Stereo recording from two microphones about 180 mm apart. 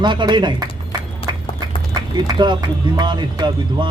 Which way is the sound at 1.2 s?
30° left (ahead or behind).